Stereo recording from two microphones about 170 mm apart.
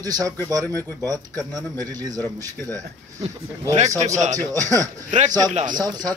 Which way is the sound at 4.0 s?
45° right (ahead or behind).